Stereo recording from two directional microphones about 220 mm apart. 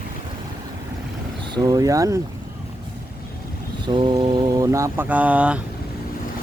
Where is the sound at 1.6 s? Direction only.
15° right (ahead or behind).